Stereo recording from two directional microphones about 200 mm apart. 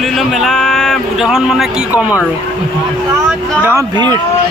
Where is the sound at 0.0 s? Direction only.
Centre (ahead or behind).